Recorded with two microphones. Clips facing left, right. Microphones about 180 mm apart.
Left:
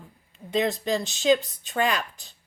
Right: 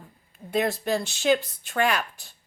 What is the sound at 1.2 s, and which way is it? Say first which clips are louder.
Speech: left 2 dB; 60° right (ahead or behind).